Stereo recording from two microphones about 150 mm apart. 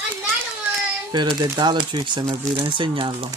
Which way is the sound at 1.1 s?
30° right (ahead or behind).